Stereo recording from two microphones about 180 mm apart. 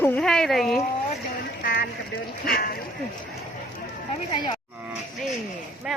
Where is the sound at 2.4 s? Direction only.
55° left (ahead or behind).